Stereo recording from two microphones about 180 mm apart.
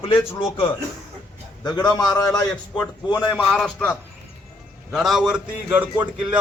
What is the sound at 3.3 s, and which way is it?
A man's voice, 5° left (ahead or behind).